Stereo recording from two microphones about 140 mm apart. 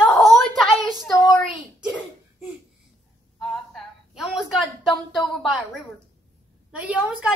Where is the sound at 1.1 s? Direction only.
25° left (ahead or behind).